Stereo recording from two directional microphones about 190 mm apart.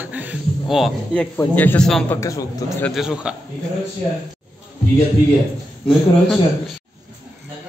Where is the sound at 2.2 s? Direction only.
15° left (ahead or behind).